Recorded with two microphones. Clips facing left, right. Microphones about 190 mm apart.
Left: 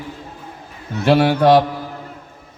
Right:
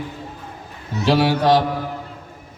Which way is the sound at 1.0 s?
55° left (ahead or behind).